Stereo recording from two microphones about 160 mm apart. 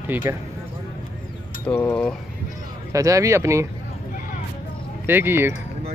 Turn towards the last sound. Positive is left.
turn(degrees=-15)  # may be behind; listen again after turning